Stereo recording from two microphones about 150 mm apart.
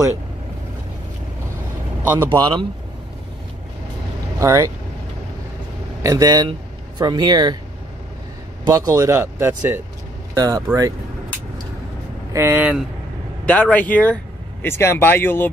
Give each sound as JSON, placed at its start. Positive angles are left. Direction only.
{"t": 2.3, "sound": "speech", "side_deg": -25}
{"t": 4.4, "sound": "speech", "side_deg": -20}
{"t": 6.0, "sound": "speech", "side_deg": -25}
{"t": 8.6, "sound": "speech", "side_deg": -25}
{"t": 12.3, "sound": "speech", "side_deg": -15}
{"t": 13.5, "sound": "speech", "side_deg": 10}